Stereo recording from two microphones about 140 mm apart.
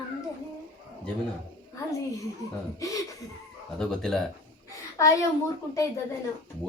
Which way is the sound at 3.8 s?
5° left (ahead or behind).